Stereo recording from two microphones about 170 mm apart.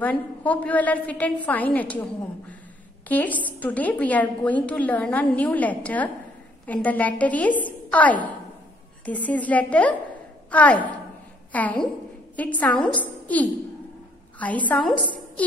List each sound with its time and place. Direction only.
0.0 s a woman's voice: 10° left (ahead or behind)
14.4 s a woman's voice: 10° left (ahead or behind)